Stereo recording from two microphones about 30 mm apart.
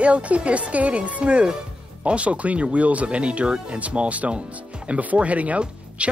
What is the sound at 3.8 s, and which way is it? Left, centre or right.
Speech, right.